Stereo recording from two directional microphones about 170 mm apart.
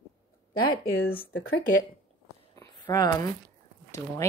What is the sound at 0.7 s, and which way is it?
Speech, 60° left (ahead or behind).